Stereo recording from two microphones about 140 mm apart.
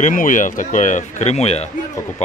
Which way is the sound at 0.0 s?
70° left (ahead or behind).